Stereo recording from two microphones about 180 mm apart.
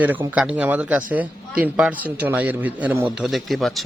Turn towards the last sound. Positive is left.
turn(degrees=0)  # may be behind; listen again after turning